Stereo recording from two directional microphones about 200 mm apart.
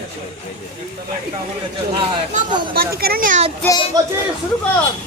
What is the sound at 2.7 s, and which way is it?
Speech, 50° right (ahead or behind).